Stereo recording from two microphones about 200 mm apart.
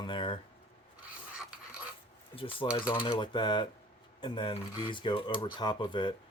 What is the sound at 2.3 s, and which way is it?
Speech, 25° left (ahead or behind).